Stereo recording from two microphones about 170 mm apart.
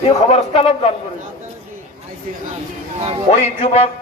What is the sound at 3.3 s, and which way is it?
Speech, 35° left (ahead or behind).